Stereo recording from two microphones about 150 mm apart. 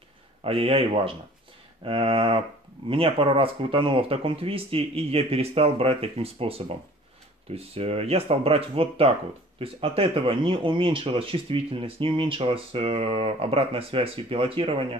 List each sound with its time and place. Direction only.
0.4 s speech: 40° right (ahead or behind)